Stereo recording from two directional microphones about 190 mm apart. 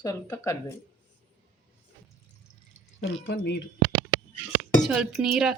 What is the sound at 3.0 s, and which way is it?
Speech, 60° left (ahead or behind).